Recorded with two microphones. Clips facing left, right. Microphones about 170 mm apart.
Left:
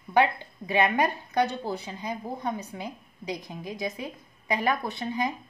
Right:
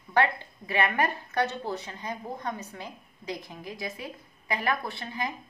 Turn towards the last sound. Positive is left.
turn(degrees=20)  # may be behind; listen again after turning